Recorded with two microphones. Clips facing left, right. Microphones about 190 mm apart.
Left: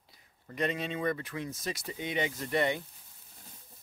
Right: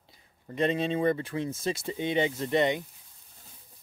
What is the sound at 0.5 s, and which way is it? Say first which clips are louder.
Speech: right 6 dB; 30° right (ahead or behind).